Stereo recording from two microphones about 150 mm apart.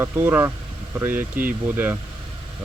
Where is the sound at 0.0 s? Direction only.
15° right (ahead or behind).